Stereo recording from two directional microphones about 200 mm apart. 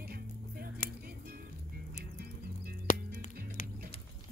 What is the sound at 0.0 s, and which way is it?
Music, 50° right (ahead or behind).